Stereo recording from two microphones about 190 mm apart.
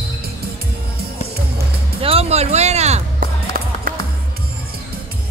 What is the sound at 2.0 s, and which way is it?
Music, 30° right (ahead or behind).